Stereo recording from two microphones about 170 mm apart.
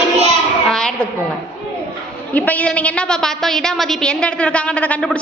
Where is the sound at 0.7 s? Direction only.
5° left (ahead or behind).